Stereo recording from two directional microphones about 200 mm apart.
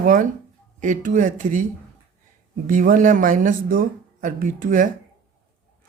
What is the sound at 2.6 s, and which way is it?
Speech, 40° right (ahead or behind).